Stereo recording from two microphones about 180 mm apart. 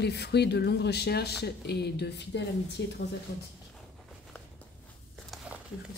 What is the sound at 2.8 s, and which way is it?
Speech, 75° left (ahead or behind).